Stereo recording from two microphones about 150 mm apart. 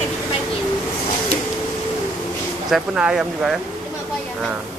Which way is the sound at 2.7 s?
5° right (ahead or behind).